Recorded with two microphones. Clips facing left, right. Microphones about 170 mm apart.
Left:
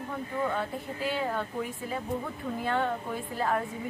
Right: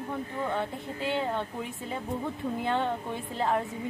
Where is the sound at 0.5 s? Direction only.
20° right (ahead or behind).